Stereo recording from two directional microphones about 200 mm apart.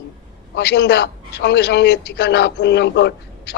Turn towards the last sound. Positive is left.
turn(degrees=60)  # may be behind; listen again after turning